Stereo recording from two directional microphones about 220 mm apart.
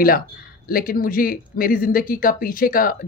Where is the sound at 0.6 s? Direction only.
40° left (ahead or behind).